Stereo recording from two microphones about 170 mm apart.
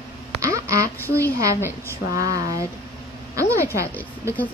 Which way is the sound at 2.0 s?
65° left (ahead or behind).